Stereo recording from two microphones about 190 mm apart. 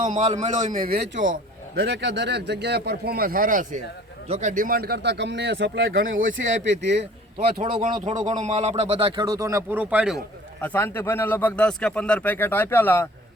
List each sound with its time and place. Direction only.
0.0 s a man's voice: 40° right (ahead or behind); by 7.6 s 55° right (ahead or behind)
7.6 s speech: 40° right (ahead or behind); by 10.2 s 5° right (ahead or behind)
10.6 s a man's voice: 10° left (ahead or behind)